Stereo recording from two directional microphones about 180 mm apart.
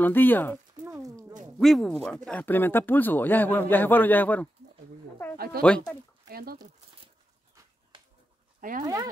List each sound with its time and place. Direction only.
0.0 s speech: 10° left (ahead or behind)
0.8 s a sound: 15° right (ahead or behind)
1.6 s speech: centre (ahead or behind)
6.2 s speech: 55° right (ahead or behind)
8.5 s speech: 45° right (ahead or behind)
8.8 s speech: 20° right (ahead or behind)